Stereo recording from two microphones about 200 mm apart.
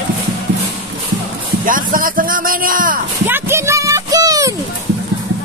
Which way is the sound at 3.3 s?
10° right (ahead or behind).